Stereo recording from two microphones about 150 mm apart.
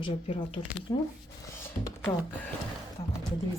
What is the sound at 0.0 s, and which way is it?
Speech, 35° left (ahead or behind).